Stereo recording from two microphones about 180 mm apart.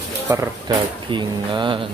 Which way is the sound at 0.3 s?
20° right (ahead or behind).